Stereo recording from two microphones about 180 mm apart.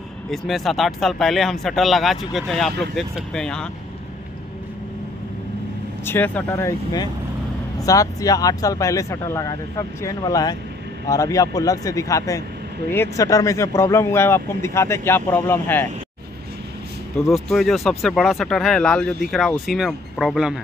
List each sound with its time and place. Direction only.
0.3 s speech: centre (ahead or behind)
6.0 s a man's voice: 10° left (ahead or behind)
17.3 s speech: centre (ahead or behind)